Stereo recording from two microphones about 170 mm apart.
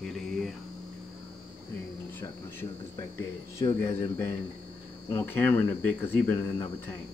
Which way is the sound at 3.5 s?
20° left (ahead or behind).